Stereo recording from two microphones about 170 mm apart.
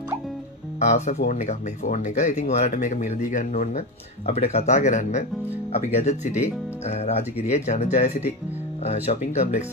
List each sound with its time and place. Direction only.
0.7 s speech: 45° left (ahead or behind)